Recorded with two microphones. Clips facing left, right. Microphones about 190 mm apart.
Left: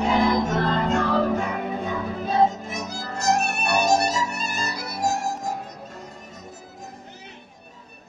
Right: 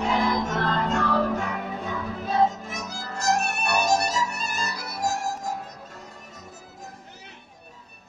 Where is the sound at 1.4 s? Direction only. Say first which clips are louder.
Left 4 dB; 25° left (ahead or behind).